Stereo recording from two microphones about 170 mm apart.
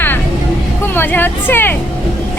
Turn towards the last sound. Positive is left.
turn(degrees=10)  # may be behind; listen again after turning